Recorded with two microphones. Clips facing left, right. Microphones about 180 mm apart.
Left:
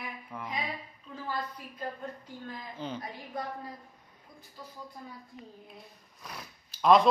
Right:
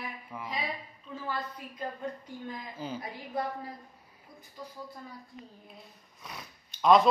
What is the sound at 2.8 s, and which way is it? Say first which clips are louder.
Speech: even; 10° right (ahead or behind).